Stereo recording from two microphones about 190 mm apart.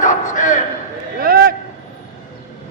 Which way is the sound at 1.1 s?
50° right (ahead or behind).